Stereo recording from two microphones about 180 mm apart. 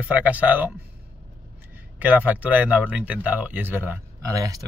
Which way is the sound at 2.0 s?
10° right (ahead or behind).